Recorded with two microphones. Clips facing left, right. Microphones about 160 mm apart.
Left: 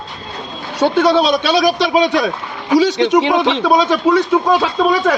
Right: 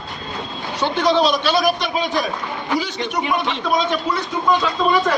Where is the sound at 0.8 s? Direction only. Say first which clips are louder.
Left 5 dB; 65° left (ahead or behind); by 5.2 s 90° left.